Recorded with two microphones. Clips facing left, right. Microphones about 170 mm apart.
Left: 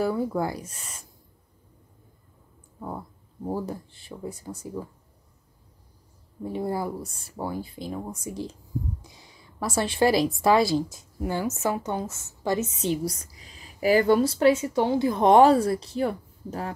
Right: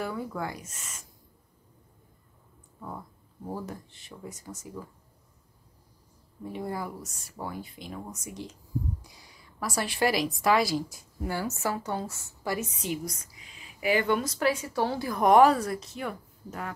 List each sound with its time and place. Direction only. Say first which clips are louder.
0.0 s speech: left 8 dB; 35° left (ahead or behind)
3.4 s speech: left 6 dB; 30° left (ahead or behind)
6.4 s a woman's voice: left 6 dB; 30° left (ahead or behind)